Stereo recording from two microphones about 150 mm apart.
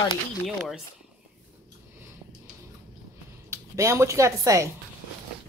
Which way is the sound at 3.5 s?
20° right (ahead or behind).